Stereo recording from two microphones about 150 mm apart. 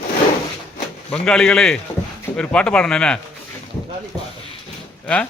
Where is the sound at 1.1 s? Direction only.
5° left (ahead or behind).